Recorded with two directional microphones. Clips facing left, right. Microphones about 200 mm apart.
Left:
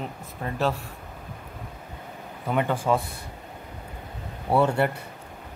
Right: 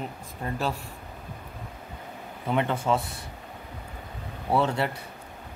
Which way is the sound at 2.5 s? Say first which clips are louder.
Left 1 dB; 10° left (ahead or behind).